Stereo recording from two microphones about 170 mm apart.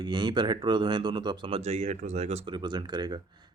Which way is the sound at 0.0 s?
25° right (ahead or behind).